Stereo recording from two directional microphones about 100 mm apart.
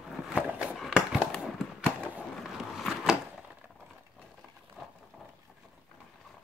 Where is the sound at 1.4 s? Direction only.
10° right (ahead or behind).